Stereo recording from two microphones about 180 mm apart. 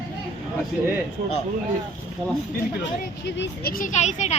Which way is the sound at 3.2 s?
75° left (ahead or behind).